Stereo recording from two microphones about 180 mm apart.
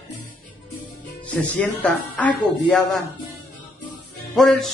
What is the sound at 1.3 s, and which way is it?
Speech, 10° left (ahead or behind).